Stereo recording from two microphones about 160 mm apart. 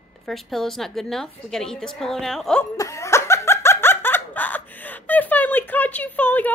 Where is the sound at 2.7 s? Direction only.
20° left (ahead or behind).